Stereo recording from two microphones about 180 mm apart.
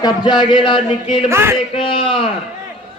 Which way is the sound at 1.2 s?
15° right (ahead or behind).